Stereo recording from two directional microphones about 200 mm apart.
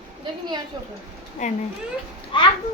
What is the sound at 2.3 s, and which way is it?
Speech, 25° left (ahead or behind).